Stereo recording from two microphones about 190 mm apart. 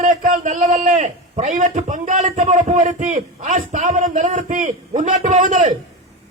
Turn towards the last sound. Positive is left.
turn(degrees=-40)  # may be behind; listen again after turning